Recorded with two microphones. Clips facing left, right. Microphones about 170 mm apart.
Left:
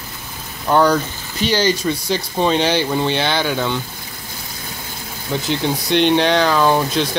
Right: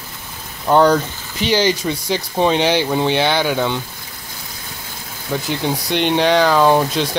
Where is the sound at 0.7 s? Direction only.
20° right (ahead or behind).